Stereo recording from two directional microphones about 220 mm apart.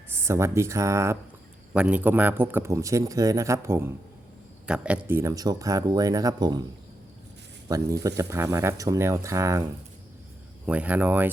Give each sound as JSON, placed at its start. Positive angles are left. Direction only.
{"t": 0.2, "sound": "a man's voice", "side_deg": -10}
{"t": 7.7, "sound": "a man's voice", "side_deg": -15}
{"t": 10.7, "sound": "a man's voice", "side_deg": -5}